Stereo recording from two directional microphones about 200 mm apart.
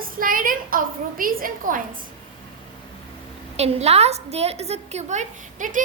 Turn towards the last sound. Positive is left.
turn(degrees=-40)  # may be behind; listen again after turning